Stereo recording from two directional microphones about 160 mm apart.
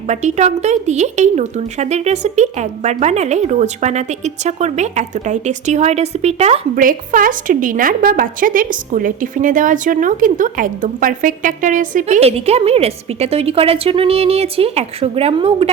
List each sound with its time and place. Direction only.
0.1 s speech: 45° right (ahead or behind)